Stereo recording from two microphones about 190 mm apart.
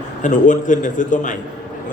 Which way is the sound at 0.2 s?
40° left (ahead or behind).